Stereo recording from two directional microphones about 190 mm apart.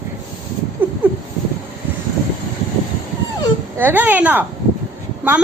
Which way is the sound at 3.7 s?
10° right (ahead or behind).